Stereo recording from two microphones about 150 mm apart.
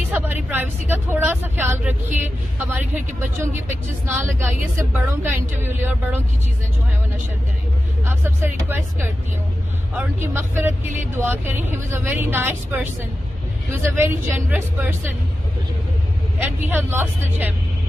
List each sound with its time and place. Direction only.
0.1 s vehicle: 15° right (ahead or behind)
2.1 s speech: 10° right (ahead or behind)
8.2 s speech: 15° right (ahead or behind)
13.9 s speech: 15° right (ahead or behind)
16.3 s speech: 10° right (ahead or behind)